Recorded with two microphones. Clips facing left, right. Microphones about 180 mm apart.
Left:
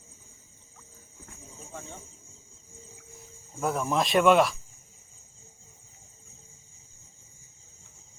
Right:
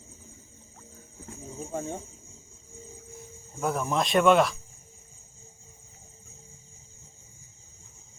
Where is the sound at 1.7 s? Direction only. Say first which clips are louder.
Right 10 dB; 45° right (ahead or behind).